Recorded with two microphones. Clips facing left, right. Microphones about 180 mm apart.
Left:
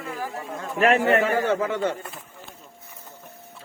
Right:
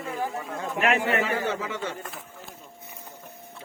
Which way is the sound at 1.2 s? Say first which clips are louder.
Left 5 dB; 50° left (ahead or behind).